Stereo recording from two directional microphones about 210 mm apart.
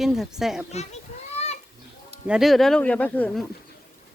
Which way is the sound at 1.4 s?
30° left (ahead or behind).